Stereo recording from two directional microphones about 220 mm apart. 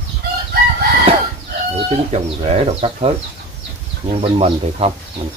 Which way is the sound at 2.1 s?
30° right (ahead or behind).